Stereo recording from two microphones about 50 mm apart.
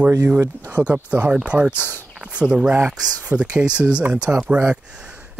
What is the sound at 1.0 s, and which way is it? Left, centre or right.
Speech, right.